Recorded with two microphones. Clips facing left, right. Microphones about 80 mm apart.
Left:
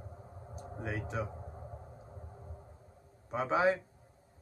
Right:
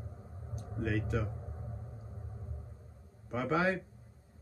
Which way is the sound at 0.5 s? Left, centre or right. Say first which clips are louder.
Right 4 dB; left.